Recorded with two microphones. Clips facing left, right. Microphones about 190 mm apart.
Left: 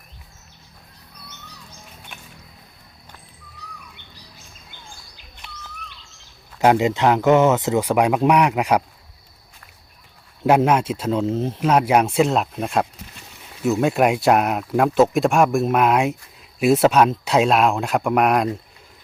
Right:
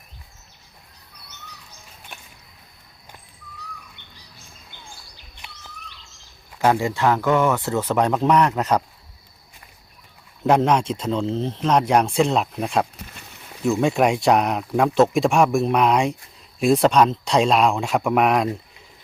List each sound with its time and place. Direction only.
6.6 s speech: 20° left (ahead or behind)
10.4 s speech: 5° left (ahead or behind)